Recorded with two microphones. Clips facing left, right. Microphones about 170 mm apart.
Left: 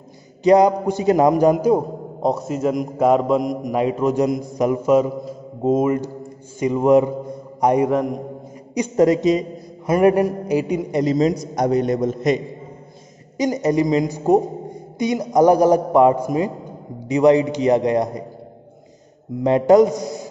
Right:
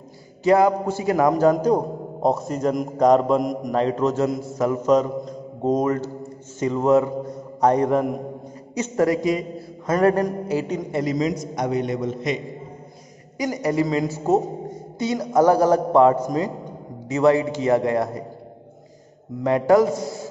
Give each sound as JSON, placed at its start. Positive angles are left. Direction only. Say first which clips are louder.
{"t": 0.4, "sound": "a man's voice", "louder": "left 3 dB", "side_deg": 20}
{"t": 7.9, "sound": "a man's voice", "louder": "left 1 dB", "side_deg": -5}
{"t": 8.7, "sound": "a man's voice", "louder": "left 4 dB", "side_deg": 20}
{"t": 11.1, "sound": "a man's voice", "louder": "left 5 dB", "side_deg": 35}
{"t": 13.4, "sound": "a man's voice", "louder": "left 4 dB", "side_deg": 20}
{"t": 19.4, "sound": "a man's voice", "louder": "left 4 dB", "side_deg": 20}